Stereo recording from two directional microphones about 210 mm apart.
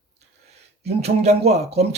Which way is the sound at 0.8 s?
30° right (ahead or behind).